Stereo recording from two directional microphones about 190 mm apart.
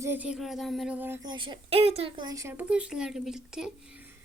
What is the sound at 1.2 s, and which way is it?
Speech, 25° right (ahead or behind).